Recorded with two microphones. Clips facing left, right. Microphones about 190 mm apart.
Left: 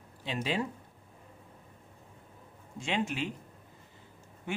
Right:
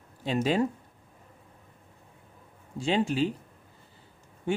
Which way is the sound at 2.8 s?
35° right (ahead or behind).